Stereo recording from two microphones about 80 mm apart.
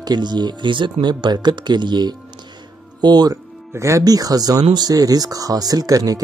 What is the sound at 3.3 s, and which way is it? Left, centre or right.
Speech, right.